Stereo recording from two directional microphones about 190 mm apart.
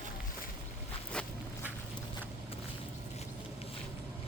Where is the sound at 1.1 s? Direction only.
5° left (ahead or behind).